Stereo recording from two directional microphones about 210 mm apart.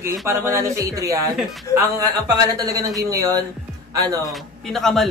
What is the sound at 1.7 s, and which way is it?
A man's voice, 15° right (ahead or behind).